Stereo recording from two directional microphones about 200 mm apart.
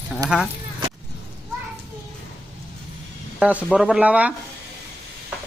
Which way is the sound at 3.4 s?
Centre (ahead or behind).